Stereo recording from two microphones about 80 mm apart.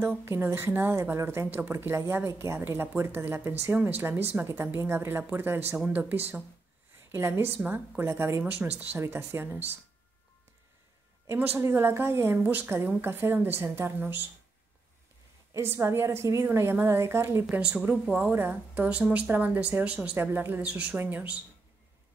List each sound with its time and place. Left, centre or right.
0.0 s speech: right
11.2 s speech: right
15.5 s a woman's voice: right
17.5 s speech: centre
20.2 s speech: right